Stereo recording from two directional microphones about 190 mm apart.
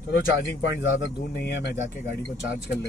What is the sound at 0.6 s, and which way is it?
Speech, 70° left (ahead or behind).